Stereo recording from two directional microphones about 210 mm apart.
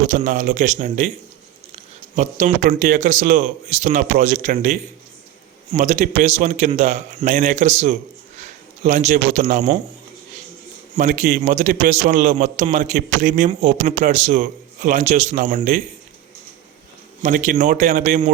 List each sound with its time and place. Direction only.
0.1 s a man's voice: 35° right (ahead or behind)
10.9 s a man's voice: 35° right (ahead or behind)
17.2 s a man's voice: 40° right (ahead or behind)